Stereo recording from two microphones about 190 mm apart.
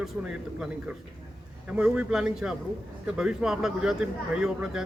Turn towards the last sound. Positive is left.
turn(degrees=-5)  # may be behind; listen again after turning